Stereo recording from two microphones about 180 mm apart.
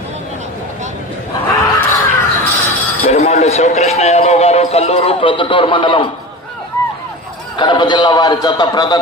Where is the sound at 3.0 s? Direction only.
35° left (ahead or behind).